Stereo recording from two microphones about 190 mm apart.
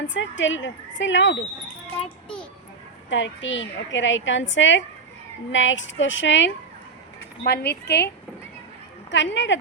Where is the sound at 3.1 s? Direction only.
75° left (ahead or behind).